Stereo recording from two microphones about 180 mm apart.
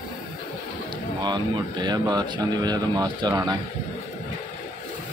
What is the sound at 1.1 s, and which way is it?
Speech, 25° right (ahead or behind).